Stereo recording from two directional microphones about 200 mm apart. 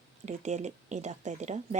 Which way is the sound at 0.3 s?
35° right (ahead or behind).